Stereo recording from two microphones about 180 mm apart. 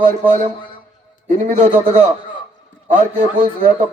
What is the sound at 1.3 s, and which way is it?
Speech, 40° right (ahead or behind).